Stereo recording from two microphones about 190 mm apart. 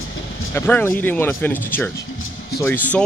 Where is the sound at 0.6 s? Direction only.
10° left (ahead or behind).